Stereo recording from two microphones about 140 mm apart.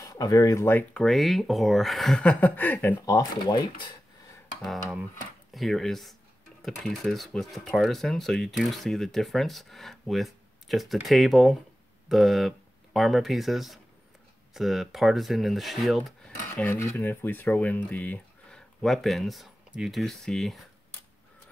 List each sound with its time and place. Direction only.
0.0 s speech: 25° left (ahead or behind)
5.5 s speech: centre (ahead or behind)
16.6 s speech: 20° left (ahead or behind); by 20.5 s centre (ahead or behind)